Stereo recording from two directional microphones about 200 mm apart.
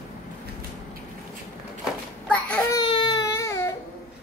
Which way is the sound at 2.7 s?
25° left (ahead or behind).